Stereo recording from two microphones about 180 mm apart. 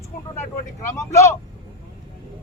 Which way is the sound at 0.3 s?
15° left (ahead or behind).